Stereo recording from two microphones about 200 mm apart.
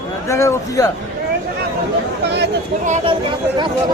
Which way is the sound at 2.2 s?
55° right (ahead or behind).